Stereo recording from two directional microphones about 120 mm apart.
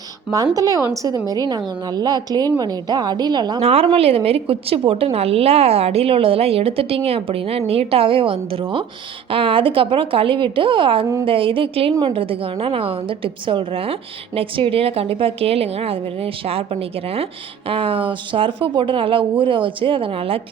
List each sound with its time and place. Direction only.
0.3 s a woman's voice: 30° right (ahead or behind)
3.6 s a woman's voice: 55° right (ahead or behind)
17.7 s a woman's voice: 50° right (ahead or behind)